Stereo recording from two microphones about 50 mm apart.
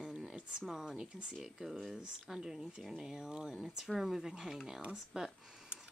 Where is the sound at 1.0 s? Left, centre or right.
Right.